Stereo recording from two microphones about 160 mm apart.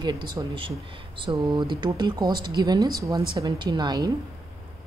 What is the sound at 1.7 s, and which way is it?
Speech, 25° right (ahead or behind).